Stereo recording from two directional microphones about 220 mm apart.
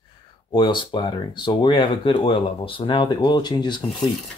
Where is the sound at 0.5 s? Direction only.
20° left (ahead or behind).